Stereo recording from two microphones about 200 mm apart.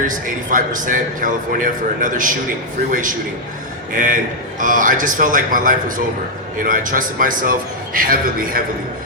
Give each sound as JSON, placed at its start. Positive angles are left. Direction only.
{"t": 0.5, "sound": "a man's voice", "side_deg": -40}
{"t": 3.9, "sound": "a man's voice", "side_deg": -40}